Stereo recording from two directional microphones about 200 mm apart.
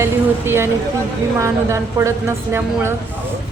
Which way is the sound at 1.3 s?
15° right (ahead or behind).